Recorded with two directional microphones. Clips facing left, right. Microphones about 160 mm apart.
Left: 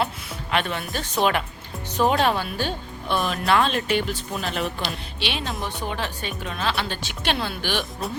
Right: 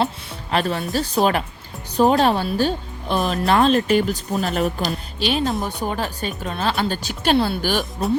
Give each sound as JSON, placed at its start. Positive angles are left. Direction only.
{"t": 0.5, "sound": "speech", "side_deg": -35}